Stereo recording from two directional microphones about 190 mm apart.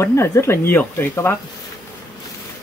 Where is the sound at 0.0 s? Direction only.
15° left (ahead or behind).